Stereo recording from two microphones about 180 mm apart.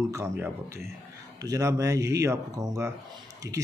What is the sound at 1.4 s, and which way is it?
Speech, 20° right (ahead or behind).